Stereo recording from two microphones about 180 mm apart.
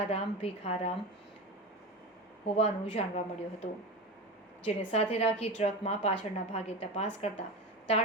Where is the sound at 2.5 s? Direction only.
35° left (ahead or behind).